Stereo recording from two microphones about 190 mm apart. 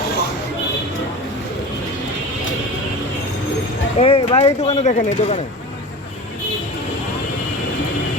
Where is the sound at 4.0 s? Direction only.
30° left (ahead or behind).